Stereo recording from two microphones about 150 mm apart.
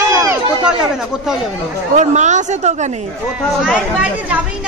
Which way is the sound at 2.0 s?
55° right (ahead or behind).